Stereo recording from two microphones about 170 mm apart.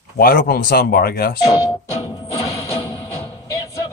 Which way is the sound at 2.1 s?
20° left (ahead or behind).